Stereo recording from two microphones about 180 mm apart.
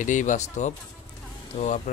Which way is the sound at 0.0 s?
45° left (ahead or behind).